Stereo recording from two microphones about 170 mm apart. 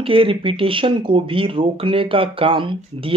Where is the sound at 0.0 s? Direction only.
30° right (ahead or behind).